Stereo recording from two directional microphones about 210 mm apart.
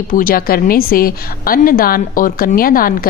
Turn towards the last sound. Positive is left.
turn(degrees=45)  # may be behind; listen again after turning